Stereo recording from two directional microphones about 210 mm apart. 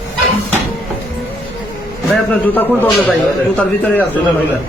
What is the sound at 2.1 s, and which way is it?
A man's voice, 10° left (ahead or behind).